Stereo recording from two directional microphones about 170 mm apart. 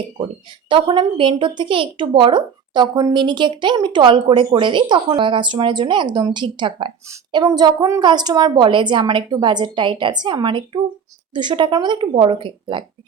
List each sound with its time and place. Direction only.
0.7 s a woman's voice: 30° right (ahead or behind)